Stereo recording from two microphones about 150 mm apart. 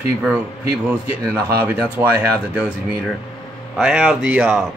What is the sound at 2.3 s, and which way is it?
Speech, 10° right (ahead or behind).